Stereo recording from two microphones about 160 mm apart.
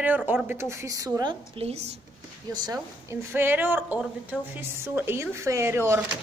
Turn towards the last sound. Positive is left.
turn(degrees=-15)  # may be behind; listen again after turning